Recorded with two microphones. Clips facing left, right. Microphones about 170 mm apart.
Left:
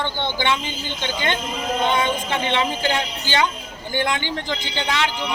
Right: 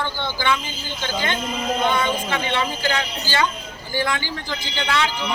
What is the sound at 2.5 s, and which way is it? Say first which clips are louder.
Speech: left 3 dB; 20° left (ahead or behind).